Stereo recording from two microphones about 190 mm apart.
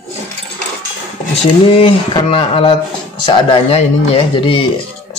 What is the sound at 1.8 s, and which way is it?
Speech, 30° left (ahead or behind).